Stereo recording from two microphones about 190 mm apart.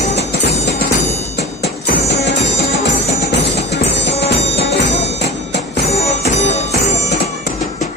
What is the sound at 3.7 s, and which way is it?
Music, 60° left (ahead or behind).